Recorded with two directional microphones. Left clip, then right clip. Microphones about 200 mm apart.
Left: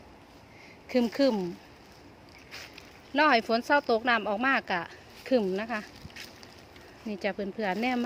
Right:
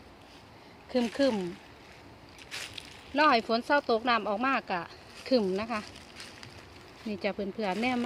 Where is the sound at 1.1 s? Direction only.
25° left (ahead or behind).